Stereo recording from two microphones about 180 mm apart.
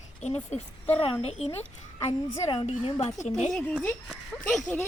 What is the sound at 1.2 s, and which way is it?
Speech, 35° left (ahead or behind).